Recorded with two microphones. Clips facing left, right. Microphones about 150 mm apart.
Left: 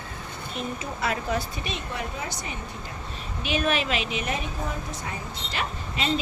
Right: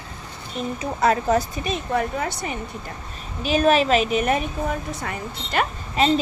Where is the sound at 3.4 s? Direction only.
40° right (ahead or behind).